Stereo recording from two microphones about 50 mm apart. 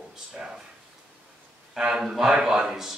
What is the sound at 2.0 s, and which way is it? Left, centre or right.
Speech, centre.